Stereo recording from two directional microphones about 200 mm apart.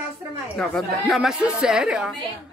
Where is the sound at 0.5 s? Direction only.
5° left (ahead or behind).